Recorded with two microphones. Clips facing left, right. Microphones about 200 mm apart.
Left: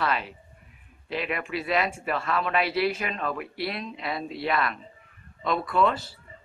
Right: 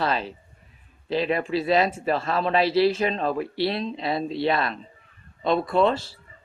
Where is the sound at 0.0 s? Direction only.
30° right (ahead or behind).